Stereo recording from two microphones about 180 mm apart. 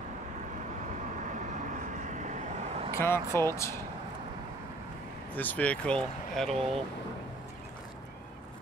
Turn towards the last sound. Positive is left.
turn(degrees=0)  # may be behind; listen again after turning